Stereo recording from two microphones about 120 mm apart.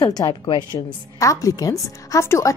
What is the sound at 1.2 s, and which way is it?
A woman's voice, 30° left (ahead or behind).